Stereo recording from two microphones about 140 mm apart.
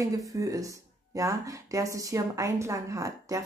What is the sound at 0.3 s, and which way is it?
Speech, 25° right (ahead or behind).